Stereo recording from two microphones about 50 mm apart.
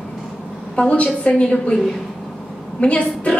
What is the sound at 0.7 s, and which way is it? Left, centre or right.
A woman's voice, left.